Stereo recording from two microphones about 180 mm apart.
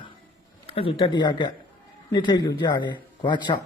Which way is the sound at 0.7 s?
30° left (ahead or behind).